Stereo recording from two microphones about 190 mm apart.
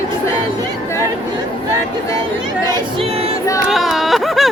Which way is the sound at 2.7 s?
30° right (ahead or behind).